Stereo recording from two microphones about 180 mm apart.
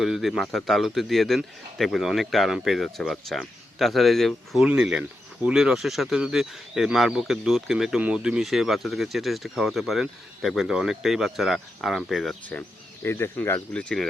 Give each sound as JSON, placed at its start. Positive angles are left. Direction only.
{"t": 0.0, "sound": "a man's voice", "side_deg": 0}